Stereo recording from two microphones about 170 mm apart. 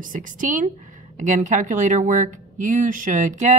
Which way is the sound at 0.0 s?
50° right (ahead or behind).